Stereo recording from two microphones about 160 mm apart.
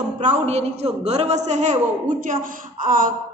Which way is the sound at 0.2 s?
45° right (ahead or behind).